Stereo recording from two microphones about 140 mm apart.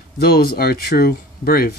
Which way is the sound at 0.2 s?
90° left.